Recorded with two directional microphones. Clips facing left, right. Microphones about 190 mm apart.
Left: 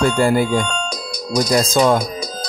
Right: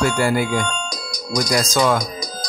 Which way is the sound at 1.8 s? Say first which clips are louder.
Left 3 dB; 15° left (ahead or behind).